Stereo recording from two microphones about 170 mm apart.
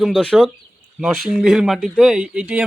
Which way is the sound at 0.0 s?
5° left (ahead or behind).